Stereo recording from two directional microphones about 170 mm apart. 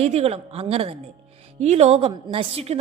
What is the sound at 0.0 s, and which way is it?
A woman's voice, 35° right (ahead or behind).